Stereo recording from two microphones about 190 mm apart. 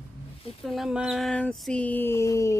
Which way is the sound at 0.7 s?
Centre (ahead or behind).